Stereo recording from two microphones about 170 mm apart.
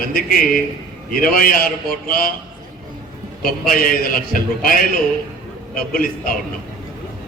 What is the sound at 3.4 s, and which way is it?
Speech, 55° left (ahead or behind).